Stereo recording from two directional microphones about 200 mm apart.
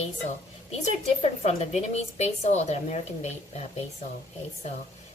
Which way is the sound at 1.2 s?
30° left (ahead or behind).